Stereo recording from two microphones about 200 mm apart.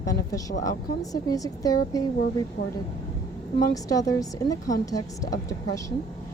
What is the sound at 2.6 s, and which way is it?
Speech, 45° left (ahead or behind).